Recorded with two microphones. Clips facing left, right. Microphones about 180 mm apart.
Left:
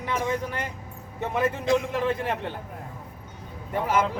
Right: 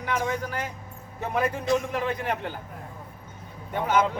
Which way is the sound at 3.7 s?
5° left (ahead or behind).